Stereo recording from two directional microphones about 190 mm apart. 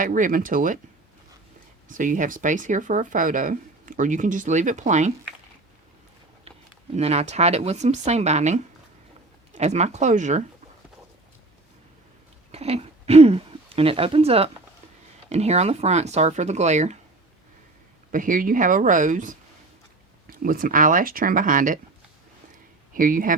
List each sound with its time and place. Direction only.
0.0 s speech: 45° right (ahead or behind)
1.9 s speech: 45° right (ahead or behind)
6.9 s speech: 35° right (ahead or behind)
12.5 s speech: 30° right (ahead or behind)
18.1 s speech: 45° right (ahead or behind)
20.4 s speech: 45° right (ahead or behind)
23.0 s speech: 45° right (ahead or behind)